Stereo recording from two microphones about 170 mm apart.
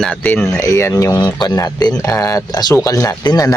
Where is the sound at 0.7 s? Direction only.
15° left (ahead or behind).